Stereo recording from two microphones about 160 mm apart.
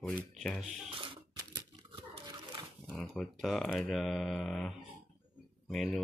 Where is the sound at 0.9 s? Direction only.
35° right (ahead or behind).